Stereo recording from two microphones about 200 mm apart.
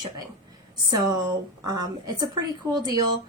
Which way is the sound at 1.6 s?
20° right (ahead or behind).